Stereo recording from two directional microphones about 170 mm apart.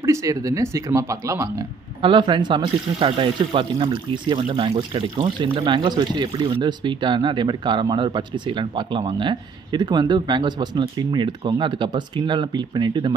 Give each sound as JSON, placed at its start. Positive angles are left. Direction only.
{"t": 0.0, "sound": "speech", "side_deg": -20}
{"t": 2.0, "sound": "speech", "side_deg": -30}